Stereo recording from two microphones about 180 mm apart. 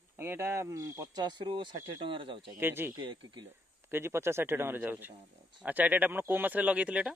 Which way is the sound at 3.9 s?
15° right (ahead or behind).